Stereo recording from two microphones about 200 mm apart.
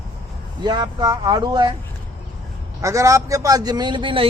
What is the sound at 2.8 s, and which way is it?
A man's voice, 15° right (ahead or behind).